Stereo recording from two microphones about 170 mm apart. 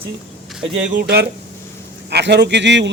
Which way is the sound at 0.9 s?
75° right (ahead or behind).